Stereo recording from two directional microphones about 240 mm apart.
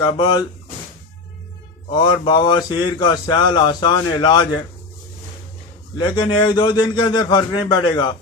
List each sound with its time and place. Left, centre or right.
0.0 s speech: centre
1.9 s speech: centre
6.0 s speech: centre